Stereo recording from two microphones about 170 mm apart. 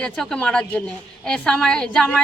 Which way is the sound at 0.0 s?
5° left (ahead or behind).